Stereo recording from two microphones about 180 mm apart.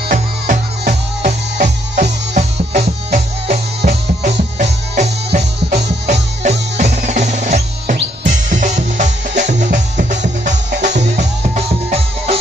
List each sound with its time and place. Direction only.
0.1 s music: 45° right (ahead or behind)
6.8 s music: 40° right (ahead or behind)